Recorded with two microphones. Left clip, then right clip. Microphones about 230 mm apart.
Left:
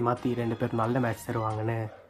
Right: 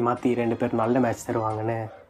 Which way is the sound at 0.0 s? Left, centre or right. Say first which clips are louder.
Right 5 dB; left.